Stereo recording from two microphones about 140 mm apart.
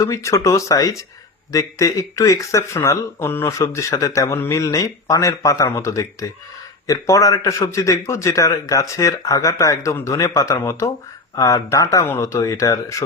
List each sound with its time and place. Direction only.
0.0 s speech: 20° left (ahead or behind)